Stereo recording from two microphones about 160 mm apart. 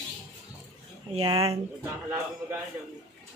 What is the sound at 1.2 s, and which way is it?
Speech, 25° right (ahead or behind).